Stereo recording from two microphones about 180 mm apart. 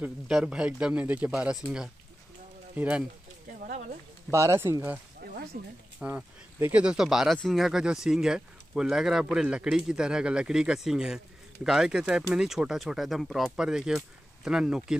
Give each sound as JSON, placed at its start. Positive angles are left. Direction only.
{"t": 0.0, "sound": "speech", "side_deg": -5}
{"t": 4.3, "sound": "speech", "side_deg": -15}
{"t": 5.2, "sound": "a sound", "side_deg": -60}
{"t": 5.9, "sound": "speech", "side_deg": -5}